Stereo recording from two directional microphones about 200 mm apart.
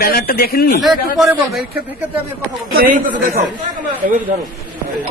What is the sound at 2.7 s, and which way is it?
Speech, 45° right (ahead or behind).